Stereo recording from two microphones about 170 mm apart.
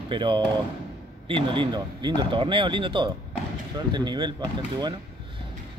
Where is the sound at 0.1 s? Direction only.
25° right (ahead or behind).